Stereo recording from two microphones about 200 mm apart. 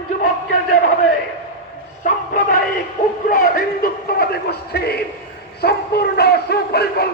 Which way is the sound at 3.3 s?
45° left (ahead or behind).